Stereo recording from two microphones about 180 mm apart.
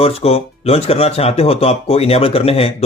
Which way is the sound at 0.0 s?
35° left (ahead or behind).